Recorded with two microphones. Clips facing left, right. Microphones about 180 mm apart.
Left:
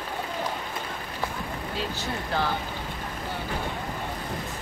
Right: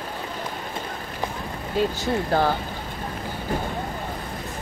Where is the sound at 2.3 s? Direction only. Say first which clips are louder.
Right 6 dB; 45° right (ahead or behind).